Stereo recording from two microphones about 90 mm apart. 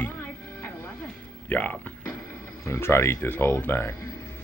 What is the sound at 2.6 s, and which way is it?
Speech, 30° left (ahead or behind).